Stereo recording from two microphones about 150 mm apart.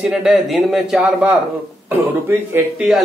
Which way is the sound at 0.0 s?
5° right (ahead or behind).